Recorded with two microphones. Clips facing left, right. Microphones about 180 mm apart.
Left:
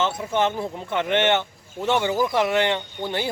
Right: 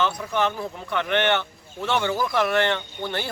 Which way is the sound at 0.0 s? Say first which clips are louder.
Left 1 dB; 25° left (ahead or behind).